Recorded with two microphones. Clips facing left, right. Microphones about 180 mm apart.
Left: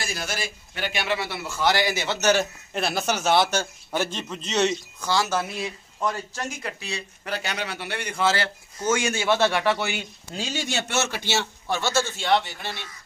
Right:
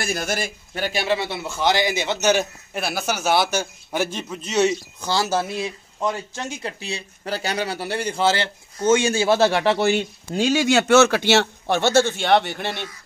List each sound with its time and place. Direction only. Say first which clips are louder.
0.0 s a man's voice: right 6 dB; 50° right (ahead or behind); by 4.7 s 5° right (ahead or behind)
5.0 s speech: right 2 dB; 30° right (ahead or behind)
9.6 s speech: right 6 dB; 40° right (ahead or behind)
10.3 s a man's voice: right 11 dB; 80° right; by 12.7 s 65° right (ahead or behind)